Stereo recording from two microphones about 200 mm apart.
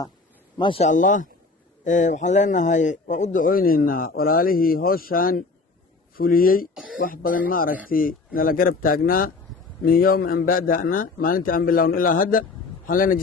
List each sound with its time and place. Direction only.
0.6 s speech: 30° left (ahead or behind)